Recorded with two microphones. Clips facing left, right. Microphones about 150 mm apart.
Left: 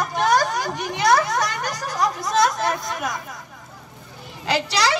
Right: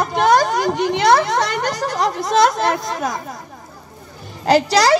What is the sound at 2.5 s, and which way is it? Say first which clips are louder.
Speech: right 5 dB; 30° right (ahead or behind).